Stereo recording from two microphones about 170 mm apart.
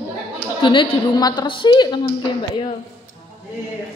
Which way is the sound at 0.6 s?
30° left (ahead or behind).